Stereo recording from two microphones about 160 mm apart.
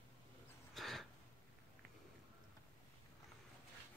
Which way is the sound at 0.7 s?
Centre (ahead or behind).